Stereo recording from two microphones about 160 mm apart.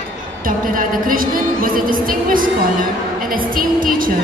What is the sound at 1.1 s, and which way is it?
A woman's voice, 60° right (ahead or behind).